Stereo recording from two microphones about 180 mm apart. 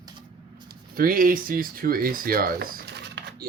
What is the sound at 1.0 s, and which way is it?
Speech, 50° right (ahead or behind).